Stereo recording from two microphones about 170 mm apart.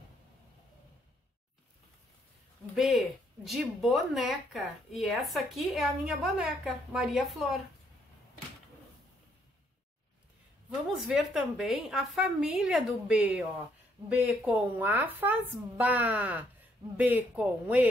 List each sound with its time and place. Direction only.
2.7 s speech: centre (ahead or behind)
10.9 s a woman's voice: centre (ahead or behind)